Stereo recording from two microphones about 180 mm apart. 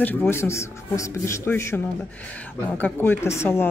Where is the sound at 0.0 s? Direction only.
10° left (ahead or behind).